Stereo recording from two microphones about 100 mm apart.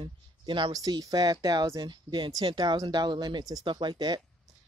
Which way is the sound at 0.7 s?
40° right (ahead or behind).